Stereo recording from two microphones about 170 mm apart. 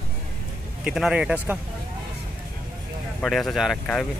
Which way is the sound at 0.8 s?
5° right (ahead or behind).